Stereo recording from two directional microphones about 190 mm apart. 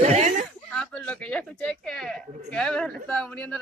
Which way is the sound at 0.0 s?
35° right (ahead or behind).